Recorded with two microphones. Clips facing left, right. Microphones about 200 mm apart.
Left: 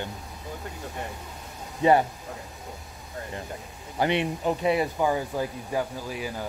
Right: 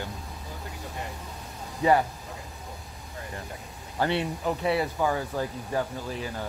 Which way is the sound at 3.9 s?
15° left (ahead or behind).